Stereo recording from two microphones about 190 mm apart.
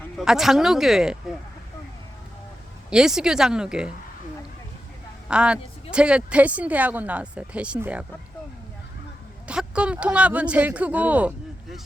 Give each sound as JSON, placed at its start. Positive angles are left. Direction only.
{"t": 0.2, "sound": "speech", "side_deg": 0}
{"t": 2.9, "sound": "speech", "side_deg": -5}
{"t": 5.3, "sound": "a woman's voice", "side_deg": -5}
{"t": 9.5, "sound": "a woman's voice", "side_deg": -5}